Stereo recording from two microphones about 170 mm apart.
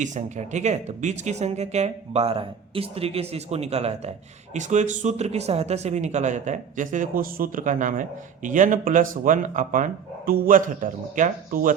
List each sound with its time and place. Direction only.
0.0 s speech: 45° right (ahead or behind)